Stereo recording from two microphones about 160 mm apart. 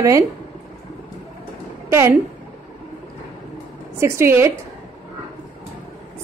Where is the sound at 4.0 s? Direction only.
15° right (ahead or behind).